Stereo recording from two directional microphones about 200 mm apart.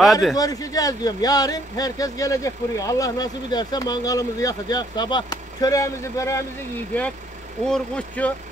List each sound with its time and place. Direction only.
0.0 s speech: centre (ahead or behind)
0.4 s speech: 15° left (ahead or behind)
7.6 s speech: 5° left (ahead or behind)